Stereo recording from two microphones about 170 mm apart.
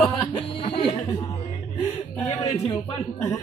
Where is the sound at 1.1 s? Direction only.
15° left (ahead or behind).